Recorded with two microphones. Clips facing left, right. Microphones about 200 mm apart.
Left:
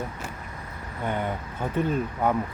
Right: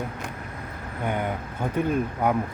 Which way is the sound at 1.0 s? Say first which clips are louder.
Right 1 dB; 10° right (ahead or behind).